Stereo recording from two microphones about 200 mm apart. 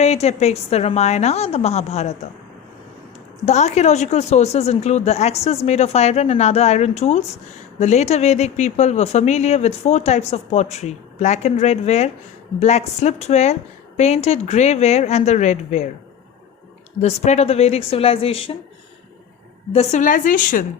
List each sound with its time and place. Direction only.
0.0 s a woman's voice: 30° left (ahead or behind)
3.4 s a woman's voice: 35° left (ahead or behind)
17.0 s a woman's voice: 35° left (ahead or behind)
19.7 s a woman's voice: 35° left (ahead or behind)